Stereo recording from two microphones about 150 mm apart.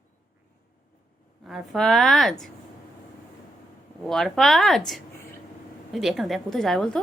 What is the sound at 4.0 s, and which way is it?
Speech, centre (ahead or behind).